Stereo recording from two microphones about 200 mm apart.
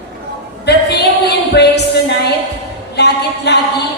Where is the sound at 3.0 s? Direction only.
55° left (ahead or behind).